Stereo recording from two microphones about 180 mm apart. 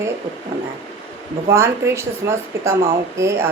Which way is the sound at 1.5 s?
15° right (ahead or behind).